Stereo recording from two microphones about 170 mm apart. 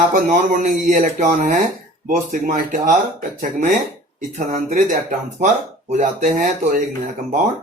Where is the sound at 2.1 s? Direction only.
55° right (ahead or behind).